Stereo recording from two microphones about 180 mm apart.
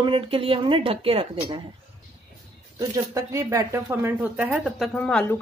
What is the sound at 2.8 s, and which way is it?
Speech, 15° right (ahead or behind).